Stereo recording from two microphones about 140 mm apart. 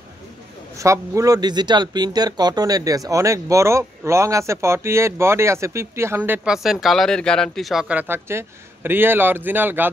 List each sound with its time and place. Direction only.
0.7 s speech: 20° right (ahead or behind); by 7.8 s centre (ahead or behind)
7.9 s a man's voice: 15° right (ahead or behind)